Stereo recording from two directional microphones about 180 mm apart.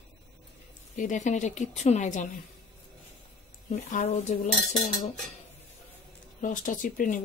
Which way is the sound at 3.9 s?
40° left (ahead or behind).